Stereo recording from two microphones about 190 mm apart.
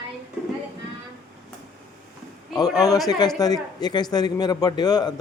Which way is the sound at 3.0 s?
20° left (ahead or behind).